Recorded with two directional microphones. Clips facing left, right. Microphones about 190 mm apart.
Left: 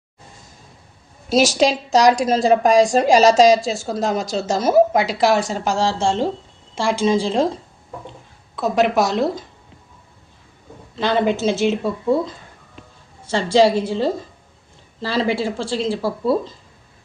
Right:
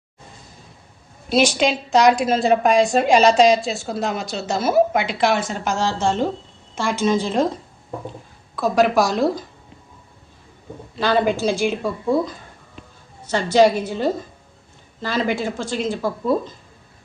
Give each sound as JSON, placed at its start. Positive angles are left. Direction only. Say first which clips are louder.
{"t": 1.5, "sound": "speech", "louder": "left 2 dB", "side_deg": 40}
{"t": 8.5, "sound": "speech", "louder": "even", "side_deg": 20}
{"t": 10.9, "sound": "speech", "louder": "even", "side_deg": 20}